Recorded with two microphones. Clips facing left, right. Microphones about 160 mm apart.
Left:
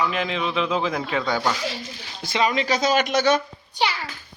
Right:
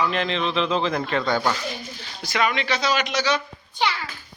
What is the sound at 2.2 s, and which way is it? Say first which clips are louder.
Speech: left 1 dB; 25° left (ahead or behind).